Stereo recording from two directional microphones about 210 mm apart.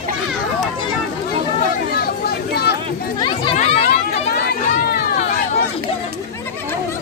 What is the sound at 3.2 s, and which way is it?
Children playing, 25° left (ahead or behind).